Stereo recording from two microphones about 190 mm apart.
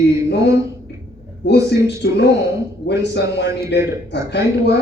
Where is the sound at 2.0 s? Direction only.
70° left (ahead or behind).